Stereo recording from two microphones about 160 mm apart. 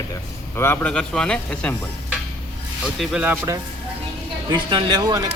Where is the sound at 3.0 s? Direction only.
5° right (ahead or behind).